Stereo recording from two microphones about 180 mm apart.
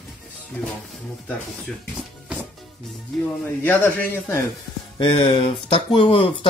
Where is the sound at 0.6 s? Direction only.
10° left (ahead or behind).